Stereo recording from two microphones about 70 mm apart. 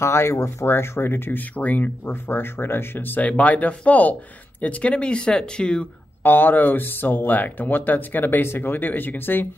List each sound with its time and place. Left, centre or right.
0.0 s speech: left
3.2 s speech: left
6.2 s speech: left